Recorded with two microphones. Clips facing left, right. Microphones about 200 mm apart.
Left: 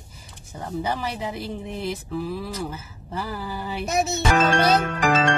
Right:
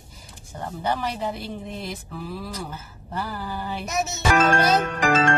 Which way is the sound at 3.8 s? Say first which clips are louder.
Left 6 dB; 30° left (ahead or behind).